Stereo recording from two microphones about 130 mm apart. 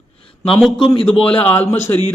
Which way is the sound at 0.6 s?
Centre (ahead or behind).